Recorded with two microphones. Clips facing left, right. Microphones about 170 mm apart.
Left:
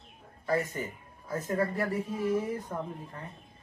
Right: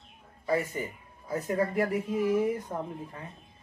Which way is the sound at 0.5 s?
10° right (ahead or behind).